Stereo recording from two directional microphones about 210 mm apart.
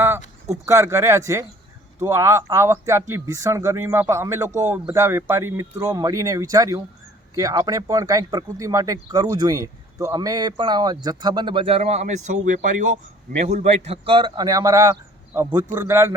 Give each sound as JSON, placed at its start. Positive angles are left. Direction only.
{"t": 0.6, "sound": "speech", "side_deg": -15}